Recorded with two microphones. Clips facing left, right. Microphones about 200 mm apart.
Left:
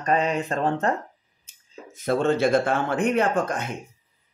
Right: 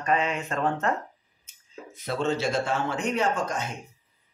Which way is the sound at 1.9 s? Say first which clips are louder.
Left 5 dB; 50° left (ahead or behind).